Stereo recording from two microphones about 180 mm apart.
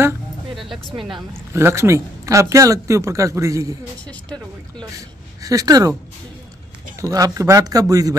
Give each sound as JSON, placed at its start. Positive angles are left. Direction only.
{"t": 1.5, "sound": "speech", "side_deg": -15}
{"t": 5.4, "sound": "speech", "side_deg": -20}
{"t": 7.0, "sound": "speech", "side_deg": -20}